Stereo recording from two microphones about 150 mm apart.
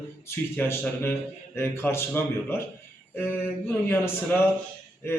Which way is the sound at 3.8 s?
15° left (ahead or behind).